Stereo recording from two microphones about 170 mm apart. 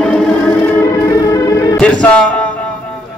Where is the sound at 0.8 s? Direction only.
20° left (ahead or behind).